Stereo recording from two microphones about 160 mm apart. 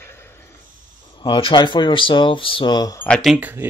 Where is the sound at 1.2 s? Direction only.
30° left (ahead or behind).